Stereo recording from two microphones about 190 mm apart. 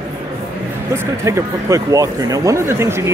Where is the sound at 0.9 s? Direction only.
15° right (ahead or behind).